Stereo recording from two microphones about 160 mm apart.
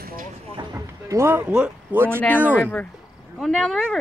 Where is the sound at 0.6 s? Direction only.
20° right (ahead or behind).